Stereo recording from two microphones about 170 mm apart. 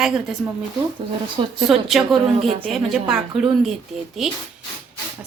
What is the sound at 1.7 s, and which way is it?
Speech, centre (ahead or behind).